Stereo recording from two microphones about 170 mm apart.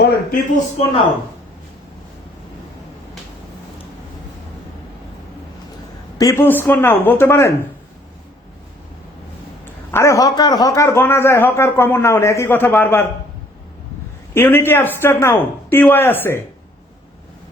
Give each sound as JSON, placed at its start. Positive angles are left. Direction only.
{"t": 0.0, "sound": "a man's voice", "side_deg": 60}
{"t": 6.1, "sound": "speech", "side_deg": 15}
{"t": 9.9, "sound": "speech", "side_deg": 15}
{"t": 14.3, "sound": "speech", "side_deg": 10}